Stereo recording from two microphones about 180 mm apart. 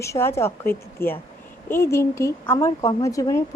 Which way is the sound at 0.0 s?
15° left (ahead or behind).